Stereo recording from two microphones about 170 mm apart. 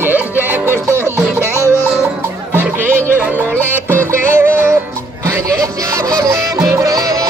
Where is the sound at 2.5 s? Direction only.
10° right (ahead or behind).